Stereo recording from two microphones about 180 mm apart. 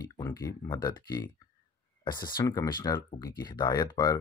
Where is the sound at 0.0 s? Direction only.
20° left (ahead or behind).